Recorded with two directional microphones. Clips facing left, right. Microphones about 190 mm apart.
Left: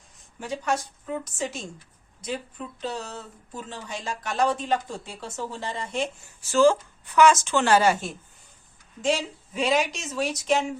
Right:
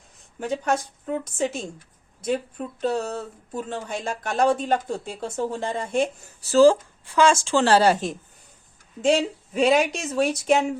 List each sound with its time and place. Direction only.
0.3 s a woman's voice: 55° right (ahead or behind); by 8.1 s 35° right (ahead or behind)
9.0 s a woman's voice: 55° right (ahead or behind)